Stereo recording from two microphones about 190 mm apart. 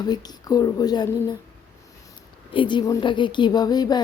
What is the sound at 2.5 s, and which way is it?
Speech, 25° left (ahead or behind).